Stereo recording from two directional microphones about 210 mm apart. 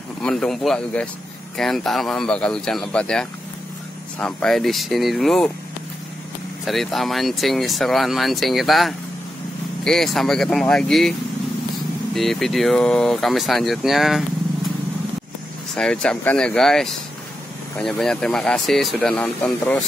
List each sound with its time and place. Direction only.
0.2 s speech: 5° left (ahead or behind)
6.6 s speech: centre (ahead or behind)
15.7 s speech: 5° left (ahead or behind)